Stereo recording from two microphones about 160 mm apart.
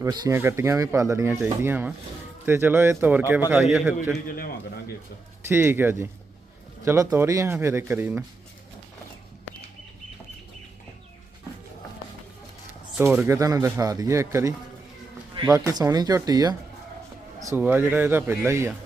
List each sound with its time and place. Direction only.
0.0 s speech: 20° right (ahead or behind)
5.5 s speech: 15° right (ahead or behind)
13.0 s speech: 15° right (ahead or behind)
15.5 s speech: 20° right (ahead or behind)
17.4 s speech: 15° right (ahead or behind)